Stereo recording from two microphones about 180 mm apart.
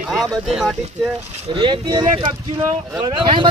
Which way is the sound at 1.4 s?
30° right (ahead or behind).